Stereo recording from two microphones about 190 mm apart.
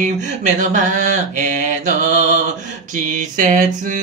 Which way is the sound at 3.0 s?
45° right (ahead or behind).